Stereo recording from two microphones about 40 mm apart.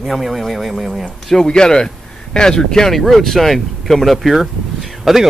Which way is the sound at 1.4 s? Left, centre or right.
Centre.